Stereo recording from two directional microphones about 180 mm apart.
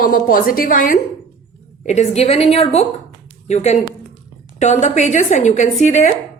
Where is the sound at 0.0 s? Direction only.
50° left (ahead or behind).